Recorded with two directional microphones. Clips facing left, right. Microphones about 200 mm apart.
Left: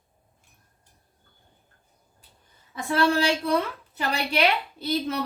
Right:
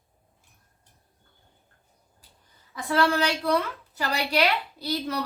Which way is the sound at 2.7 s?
25° left (ahead or behind).